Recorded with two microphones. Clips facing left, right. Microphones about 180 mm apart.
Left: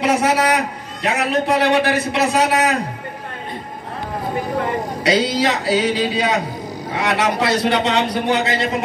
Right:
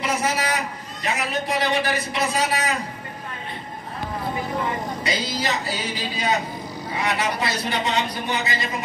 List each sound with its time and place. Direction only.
0.0 s a man's voice: 70° left (ahead or behind)
4.6 s a man's voice: 70° left (ahead or behind)
7.3 s a man's voice: 70° left (ahead or behind)